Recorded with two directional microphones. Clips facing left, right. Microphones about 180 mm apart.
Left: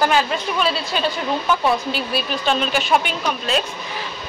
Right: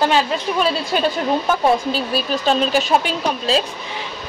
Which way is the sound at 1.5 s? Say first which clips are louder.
Right 1 dB; 40° right (ahead or behind).